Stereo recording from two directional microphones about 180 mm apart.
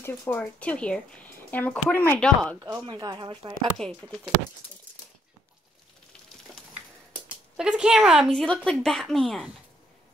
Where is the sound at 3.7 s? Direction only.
5° left (ahead or behind).